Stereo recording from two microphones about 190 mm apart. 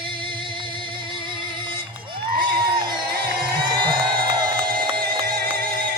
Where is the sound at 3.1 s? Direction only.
55° right (ahead or behind).